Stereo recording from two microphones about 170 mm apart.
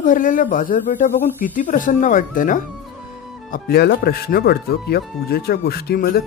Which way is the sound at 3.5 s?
70° left (ahead or behind).